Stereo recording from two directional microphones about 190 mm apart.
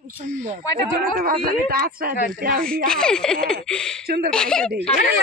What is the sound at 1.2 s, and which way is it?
Speech, 50° right (ahead or behind).